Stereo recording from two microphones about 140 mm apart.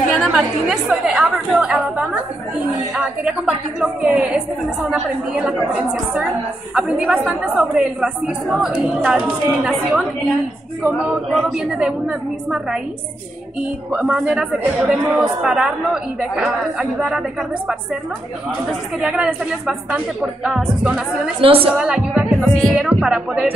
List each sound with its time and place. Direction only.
0.1 s a woman's voice: centre (ahead or behind)
3.3 s a woman's voice: 5° right (ahead or behind)
6.7 s a woman's voice: 10° right (ahead or behind)
11.5 s a woman's voice: 5° right (ahead or behind)
13.9 s a woman's voice: 5° right (ahead or behind)
18.9 s a woman's voice: 5° right (ahead or behind)
21.4 s a woman's voice: 40° right (ahead or behind)
21.7 s a woman's voice: 5° right (ahead or behind)